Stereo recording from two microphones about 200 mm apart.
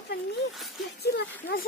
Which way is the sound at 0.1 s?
55° left (ahead or behind).